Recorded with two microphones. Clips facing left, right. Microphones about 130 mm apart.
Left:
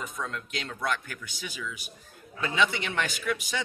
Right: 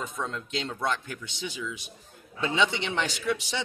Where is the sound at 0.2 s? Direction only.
25° right (ahead or behind).